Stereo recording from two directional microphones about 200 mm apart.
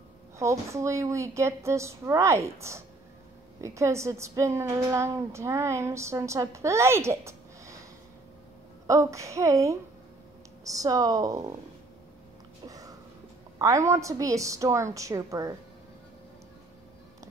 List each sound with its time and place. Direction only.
0.4 s a woman's voice: 15° right (ahead or behind)
8.8 s a woman's voice: 15° right (ahead or behind)
12.6 s a sound: 20° right (ahead or behind)
13.6 s a woman's voice: 15° right (ahead or behind)